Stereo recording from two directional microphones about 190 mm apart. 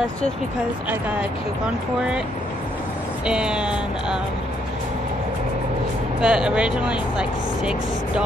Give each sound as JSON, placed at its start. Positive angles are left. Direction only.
{"t": 3.3, "sound": "speech", "side_deg": -5}
{"t": 6.2, "sound": "speech", "side_deg": -5}